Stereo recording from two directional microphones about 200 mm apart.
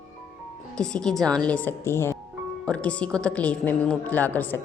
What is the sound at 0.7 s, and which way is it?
A woman's voice, 5° left (ahead or behind).